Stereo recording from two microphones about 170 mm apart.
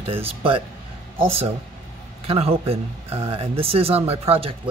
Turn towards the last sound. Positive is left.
turn(degrees=-35)  # may be behind; listen again after turning